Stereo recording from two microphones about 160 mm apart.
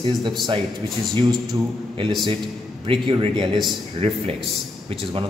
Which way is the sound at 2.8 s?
35° right (ahead or behind).